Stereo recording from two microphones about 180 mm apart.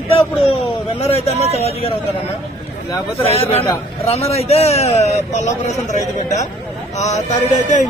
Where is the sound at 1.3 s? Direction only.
35° right (ahead or behind).